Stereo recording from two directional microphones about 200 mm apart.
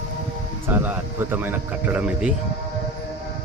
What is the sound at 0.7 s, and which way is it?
Speech, 10° right (ahead or behind).